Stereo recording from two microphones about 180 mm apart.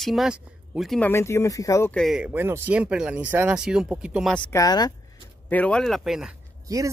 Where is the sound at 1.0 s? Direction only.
15° left (ahead or behind).